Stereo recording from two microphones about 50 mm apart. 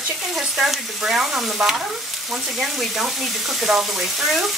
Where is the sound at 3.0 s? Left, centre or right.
Centre.